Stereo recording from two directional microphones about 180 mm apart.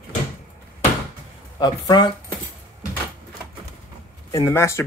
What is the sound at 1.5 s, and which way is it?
Speech, 25° left (ahead or behind).